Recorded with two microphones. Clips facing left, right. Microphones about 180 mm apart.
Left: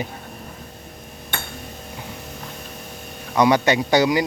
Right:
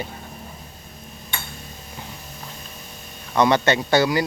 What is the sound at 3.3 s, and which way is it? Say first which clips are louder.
Speech: left 1 dB; 10° left (ahead or behind).